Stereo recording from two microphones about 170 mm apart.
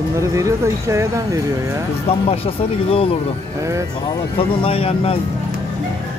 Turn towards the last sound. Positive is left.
turn(degrees=35)  # may be behind; listen again after turning